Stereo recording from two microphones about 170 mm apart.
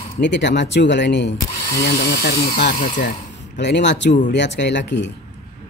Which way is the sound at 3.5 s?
90° left.